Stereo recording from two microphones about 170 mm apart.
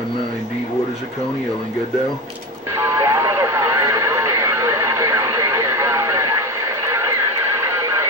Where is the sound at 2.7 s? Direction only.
15° right (ahead or behind).